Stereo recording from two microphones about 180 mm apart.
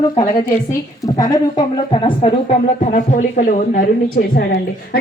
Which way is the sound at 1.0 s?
20° left (ahead or behind).